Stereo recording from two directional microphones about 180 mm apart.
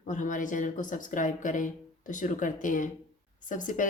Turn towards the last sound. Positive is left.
turn(degrees=45)  # may be behind; listen again after turning